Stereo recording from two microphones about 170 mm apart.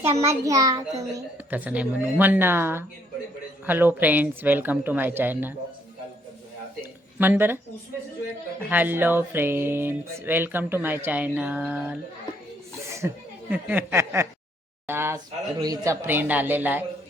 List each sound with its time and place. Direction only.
0.2 s a child's voice: 20° right (ahead or behind)
1.5 s speech: 10° right (ahead or behind)
7.2 s speech: 10° right (ahead or behind)
8.7 s speech: 10° right (ahead or behind)